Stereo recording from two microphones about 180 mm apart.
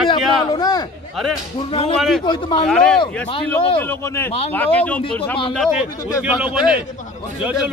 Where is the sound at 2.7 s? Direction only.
5° left (ahead or behind).